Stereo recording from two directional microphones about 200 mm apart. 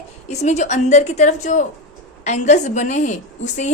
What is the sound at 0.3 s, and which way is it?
A woman's voice, 35° left (ahead or behind).